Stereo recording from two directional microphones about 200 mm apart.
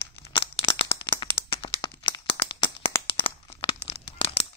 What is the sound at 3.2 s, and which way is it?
Tearing, 30° left (ahead or behind).